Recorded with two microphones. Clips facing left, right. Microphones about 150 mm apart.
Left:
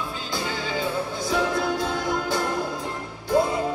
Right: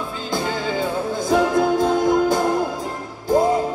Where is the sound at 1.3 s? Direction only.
45° right (ahead or behind).